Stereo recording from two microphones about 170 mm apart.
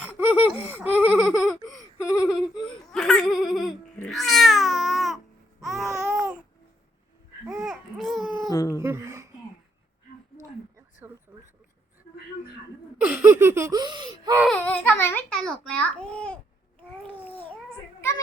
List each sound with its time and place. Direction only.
0.0 s a sound: 10° right (ahead or behind)
4.0 s cat: centre (ahead or behind)
5.6 s babbling: centre (ahead or behind)
7.4 s babbling: centre (ahead or behind)
8.4 s cat: 20° left (ahead or behind)
8.8 s a sound: 15° right (ahead or behind)
10.3 s a sound: 15° right (ahead or behind)
13.1 s laughter: 10° right (ahead or behind)
14.4 s babbling: 5° left (ahead or behind)